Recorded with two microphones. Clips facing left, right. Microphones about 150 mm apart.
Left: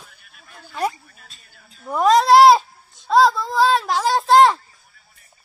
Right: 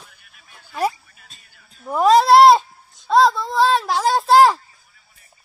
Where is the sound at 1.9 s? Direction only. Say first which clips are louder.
Right 1 dB; centre (ahead or behind).